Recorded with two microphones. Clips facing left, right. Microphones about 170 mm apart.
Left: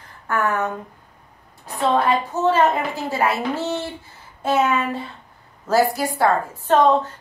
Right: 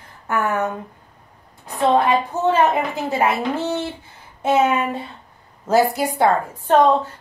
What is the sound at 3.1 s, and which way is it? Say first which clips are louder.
A woman's voice: right 2 dB; 15° right (ahead or behind).